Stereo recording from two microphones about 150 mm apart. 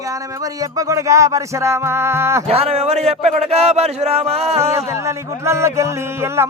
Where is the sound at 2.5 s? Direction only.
40° right (ahead or behind).